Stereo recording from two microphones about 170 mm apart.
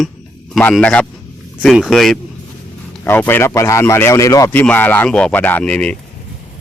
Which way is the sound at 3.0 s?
10° left (ahead or behind).